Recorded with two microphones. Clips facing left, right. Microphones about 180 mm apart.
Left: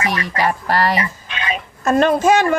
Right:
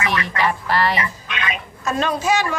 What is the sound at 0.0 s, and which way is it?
Speech, 40° left (ahead or behind).